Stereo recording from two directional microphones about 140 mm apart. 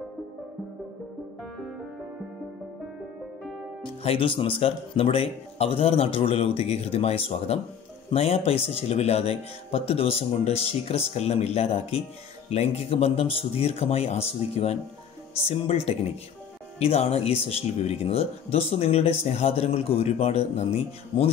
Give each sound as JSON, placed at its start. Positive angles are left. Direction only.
{"t": 4.0, "sound": "speech", "side_deg": 40}